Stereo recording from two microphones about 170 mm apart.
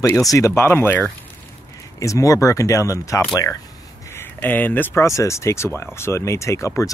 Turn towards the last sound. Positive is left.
turn(degrees=15)  # may be behind; listen again after turning